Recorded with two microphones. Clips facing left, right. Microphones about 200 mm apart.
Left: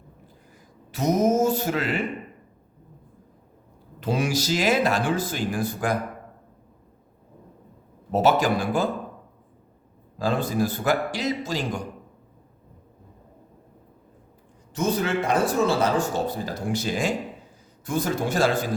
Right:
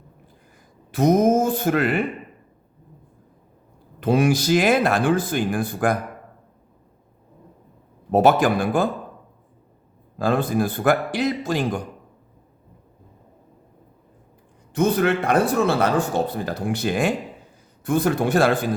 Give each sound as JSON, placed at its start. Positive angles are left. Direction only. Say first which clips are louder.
{"t": 0.9, "sound": "speech", "louder": "right 4 dB", "side_deg": -55}
{"t": 4.0, "sound": "a man's voice", "louder": "right 6 dB", "side_deg": -55}
{"t": 8.1, "sound": "a man's voice", "louder": "right 4 dB", "side_deg": -55}
{"t": 10.2, "sound": "a man's voice", "louder": "right 3 dB", "side_deg": -55}
{"t": 14.7, "sound": "a man's voice", "louder": "right 5 dB", "side_deg": -60}